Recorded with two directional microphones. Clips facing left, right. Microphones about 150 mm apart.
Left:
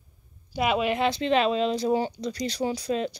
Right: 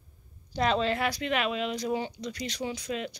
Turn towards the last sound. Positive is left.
turn(degrees=35)  # may be behind; listen again after turning